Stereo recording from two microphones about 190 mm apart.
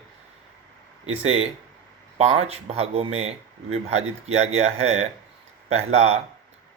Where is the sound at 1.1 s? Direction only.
90° right.